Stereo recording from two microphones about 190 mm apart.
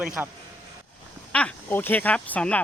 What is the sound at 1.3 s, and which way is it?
Speech, 5° left (ahead or behind).